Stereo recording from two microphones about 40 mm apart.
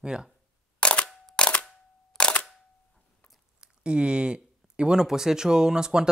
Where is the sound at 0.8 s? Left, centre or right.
Left.